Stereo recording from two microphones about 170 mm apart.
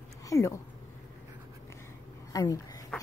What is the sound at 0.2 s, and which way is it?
Speech, 20° left (ahead or behind).